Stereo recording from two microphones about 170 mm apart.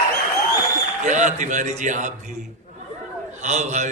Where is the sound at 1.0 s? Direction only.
45° right (ahead or behind).